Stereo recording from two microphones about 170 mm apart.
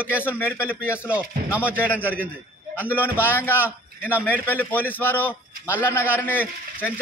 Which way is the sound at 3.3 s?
10° left (ahead or behind).